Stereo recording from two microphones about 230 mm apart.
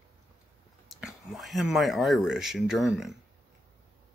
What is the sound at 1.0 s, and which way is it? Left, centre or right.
Speech, centre.